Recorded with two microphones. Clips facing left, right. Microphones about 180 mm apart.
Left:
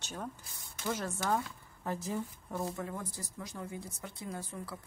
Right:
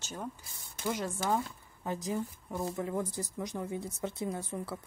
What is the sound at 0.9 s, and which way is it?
Speech, 15° right (ahead or behind).